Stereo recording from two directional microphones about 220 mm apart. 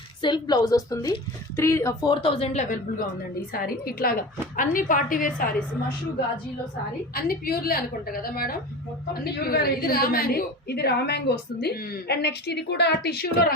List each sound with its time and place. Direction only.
0.2 s speech: 20° left (ahead or behind)
3.5 s a woman's voice: 40° left (ahead or behind)
7.1 s a woman's voice: 45° left (ahead or behind)